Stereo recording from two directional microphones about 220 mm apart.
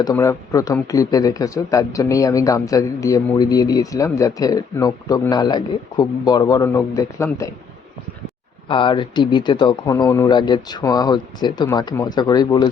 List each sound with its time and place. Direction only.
0.0 s speech: 15° left (ahead or behind)
8.6 s speech: 20° left (ahead or behind)